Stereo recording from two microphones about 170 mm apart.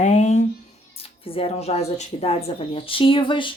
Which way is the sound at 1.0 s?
35° left (ahead or behind).